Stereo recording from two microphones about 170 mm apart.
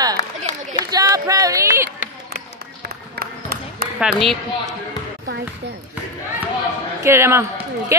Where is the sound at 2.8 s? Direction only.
70° right (ahead or behind).